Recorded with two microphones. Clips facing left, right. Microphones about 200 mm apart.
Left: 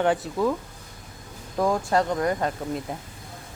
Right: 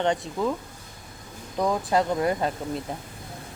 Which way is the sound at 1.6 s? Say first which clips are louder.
Left 1 dB; centre (ahead or behind).